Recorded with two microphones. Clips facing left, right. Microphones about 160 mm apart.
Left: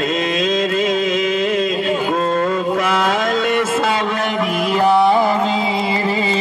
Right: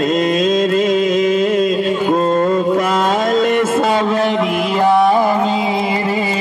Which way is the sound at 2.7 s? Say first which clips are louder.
Right 2 dB; 40° right (ahead or behind).